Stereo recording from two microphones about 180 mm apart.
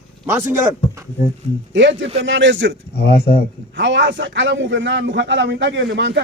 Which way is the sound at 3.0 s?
60° left (ahead or behind).